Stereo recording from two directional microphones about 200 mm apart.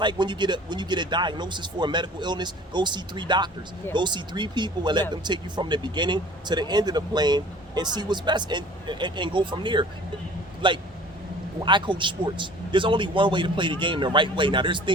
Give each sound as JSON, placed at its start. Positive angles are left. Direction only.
{"t": 0.0, "sound": "speech", "side_deg": -20}